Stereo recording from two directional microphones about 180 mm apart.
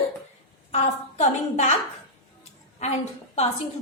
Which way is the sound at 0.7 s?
40° left (ahead or behind).